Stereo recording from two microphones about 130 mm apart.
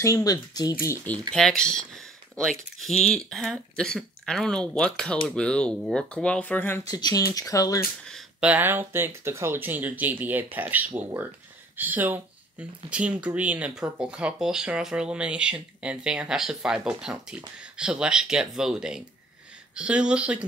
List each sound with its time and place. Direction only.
0.0 s speech: 25° left (ahead or behind)
1.3 s speech: 5° left (ahead or behind)
6.9 s speech: 30° left (ahead or behind)
8.4 s speech: 10° right (ahead or behind)